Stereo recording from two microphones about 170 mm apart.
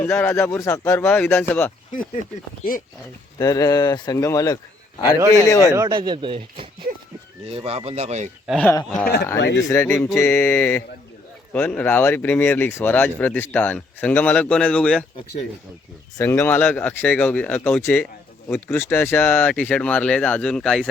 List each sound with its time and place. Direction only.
0.0 s speech: 15° left (ahead or behind)
3.3 s speech: 20° left (ahead or behind)
5.7 s speech: 20° right (ahead or behind); by 8.3 s 40° right (ahead or behind)
8.4 s speech: 5° left (ahead or behind)
9.6 s speech: 15° left (ahead or behind)
16.1 s speech: 15° left (ahead or behind)